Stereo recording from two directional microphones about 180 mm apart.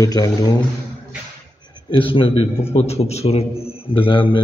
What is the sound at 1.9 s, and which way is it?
A man's voice, 30° left (ahead or behind).